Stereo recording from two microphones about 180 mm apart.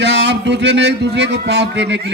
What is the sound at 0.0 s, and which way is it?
A man's voice, 70° right (ahead or behind).